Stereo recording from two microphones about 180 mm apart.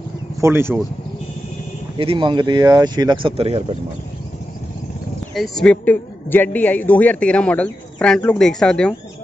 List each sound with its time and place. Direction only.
0.4 s speech: 15° right (ahead or behind)
2.0 s speech: 30° right (ahead or behind)
5.3 s a woman's voice: centre (ahead or behind)